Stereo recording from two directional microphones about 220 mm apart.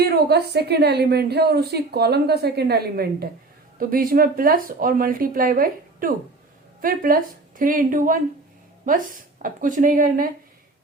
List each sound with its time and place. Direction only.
0.1 s a woman's voice: 45° right (ahead or behind)